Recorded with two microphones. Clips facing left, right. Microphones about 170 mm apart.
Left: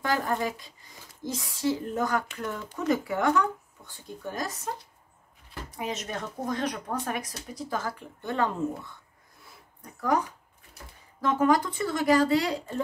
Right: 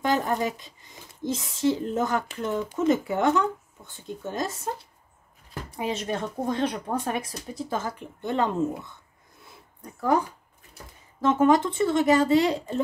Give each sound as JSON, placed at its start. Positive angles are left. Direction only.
{"t": 0.0, "sound": "speech", "side_deg": -20}
{"t": 5.7, "sound": "speech", "side_deg": -30}
{"t": 9.9, "sound": "speech", "side_deg": -30}